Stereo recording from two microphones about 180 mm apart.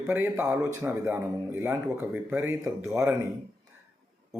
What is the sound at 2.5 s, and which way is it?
Speech, 15° right (ahead or behind).